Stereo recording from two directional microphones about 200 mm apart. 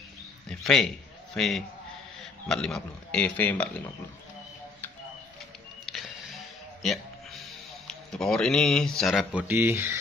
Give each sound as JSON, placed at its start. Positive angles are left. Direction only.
{"t": 0.5, "sound": "a man's voice", "side_deg": 5}
{"t": 5.9, "sound": "music", "side_deg": 0}
{"t": 6.8, "sound": "speech", "side_deg": 0}